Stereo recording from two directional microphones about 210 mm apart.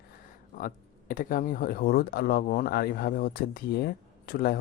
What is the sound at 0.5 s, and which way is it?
Speech, 40° left (ahead or behind).